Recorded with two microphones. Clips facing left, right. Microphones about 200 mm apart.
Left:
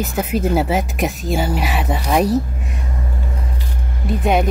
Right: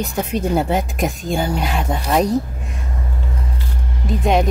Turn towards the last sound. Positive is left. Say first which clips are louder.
# even
turn(degrees=0)  # may be behind; listen again after turning